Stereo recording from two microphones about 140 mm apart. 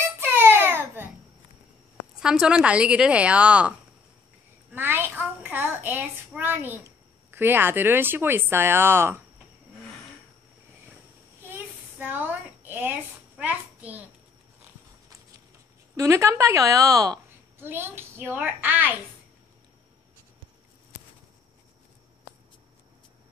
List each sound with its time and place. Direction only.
0.2 s music: 15° right (ahead or behind)
2.1 s speech: 5° right (ahead or behind)
4.7 s child singing: 15° right (ahead or behind)
7.2 s speech: 15° right (ahead or behind)
11.4 s a sound: 15° right (ahead or behind)
13.4 s hands: 10° right (ahead or behind)
16.0 s a woman's voice: 20° right (ahead or behind)